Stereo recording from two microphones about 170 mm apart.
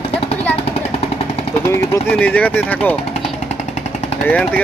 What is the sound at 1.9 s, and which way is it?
A man's voice, 10° left (ahead or behind).